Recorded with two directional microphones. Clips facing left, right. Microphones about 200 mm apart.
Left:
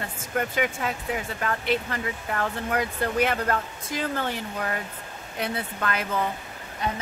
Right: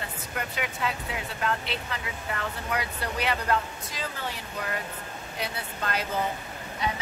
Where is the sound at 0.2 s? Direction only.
50° left (ahead or behind).